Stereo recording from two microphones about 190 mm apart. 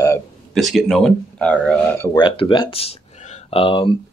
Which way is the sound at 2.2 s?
25° left (ahead or behind).